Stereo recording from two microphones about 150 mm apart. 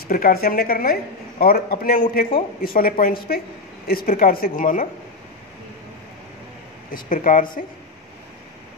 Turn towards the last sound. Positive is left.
turn(degrees=65)  # may be behind; listen again after turning